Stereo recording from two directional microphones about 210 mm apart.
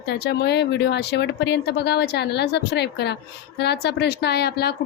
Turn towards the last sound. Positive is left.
turn(degrees=50)  # may be behind; listen again after turning